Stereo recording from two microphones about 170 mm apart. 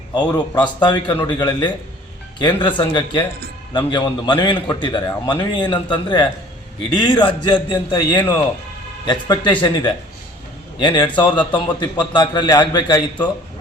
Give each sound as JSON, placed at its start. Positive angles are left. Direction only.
{"t": 0.3, "sound": "a man's voice", "side_deg": 25}